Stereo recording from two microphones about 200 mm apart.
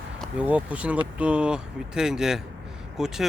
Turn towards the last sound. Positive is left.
turn(degrees=0)  # may be behind; listen again after turning